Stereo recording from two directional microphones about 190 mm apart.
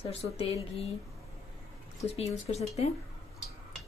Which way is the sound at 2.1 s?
35° left (ahead or behind).